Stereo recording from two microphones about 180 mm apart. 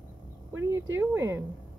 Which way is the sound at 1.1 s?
10° right (ahead or behind).